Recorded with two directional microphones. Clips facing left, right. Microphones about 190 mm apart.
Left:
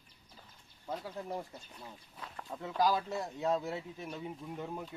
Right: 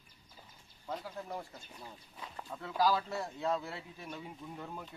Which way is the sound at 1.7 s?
Centre (ahead or behind).